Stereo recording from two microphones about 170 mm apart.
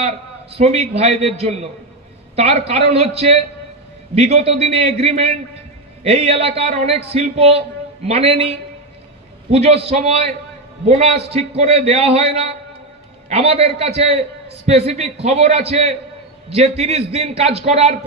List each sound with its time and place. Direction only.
0.0 s a man's voice: 40° right (ahead or behind)